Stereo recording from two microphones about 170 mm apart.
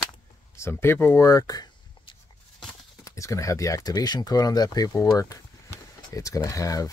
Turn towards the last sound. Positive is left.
turn(degrees=20)  # may be behind; listen again after turning